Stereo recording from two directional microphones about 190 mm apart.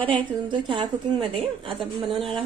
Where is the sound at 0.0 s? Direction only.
25° right (ahead or behind).